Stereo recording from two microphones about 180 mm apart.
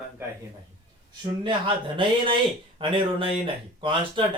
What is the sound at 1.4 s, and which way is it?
Speech, 25° right (ahead or behind).